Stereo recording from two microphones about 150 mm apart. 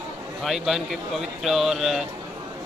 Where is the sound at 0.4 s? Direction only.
Centre (ahead or behind).